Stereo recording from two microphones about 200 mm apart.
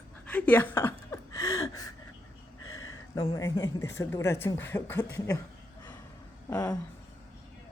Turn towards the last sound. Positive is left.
turn(degrees=10)  # may be behind; listen again after turning